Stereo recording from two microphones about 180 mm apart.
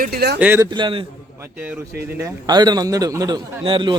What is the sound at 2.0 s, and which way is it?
A man's voice, 15° right (ahead or behind).